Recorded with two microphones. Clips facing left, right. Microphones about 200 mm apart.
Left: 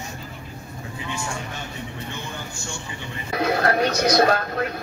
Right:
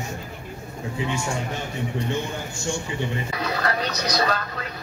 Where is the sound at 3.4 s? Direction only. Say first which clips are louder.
Left 7 dB; 50° left (ahead or behind).